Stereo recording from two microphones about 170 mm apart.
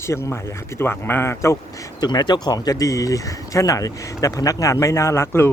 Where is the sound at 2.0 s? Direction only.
25° left (ahead or behind).